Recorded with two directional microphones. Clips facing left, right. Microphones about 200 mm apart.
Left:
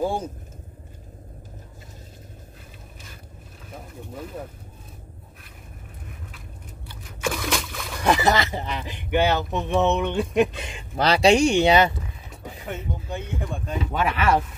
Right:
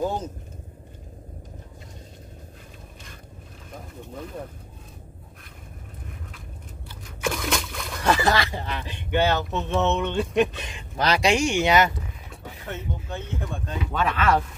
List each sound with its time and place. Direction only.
0.0 s vehicle: 10° left (ahead or behind)
3.7 s speech: 5° left (ahead or behind)
7.2 s a sound: 5° left (ahead or behind)
8.0 s speech: 20° left (ahead or behind)
11.0 s speech: 30° left (ahead or behind)
12.7 s speech: 15° left (ahead or behind)